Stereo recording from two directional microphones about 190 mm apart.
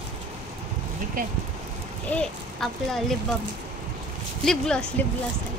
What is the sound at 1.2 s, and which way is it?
Speech, 45° right (ahead or behind).